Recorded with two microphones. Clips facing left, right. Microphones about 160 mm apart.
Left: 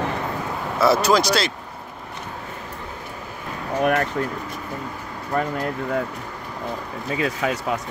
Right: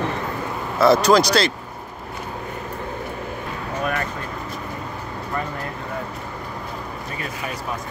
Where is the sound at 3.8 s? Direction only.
65° left (ahead or behind).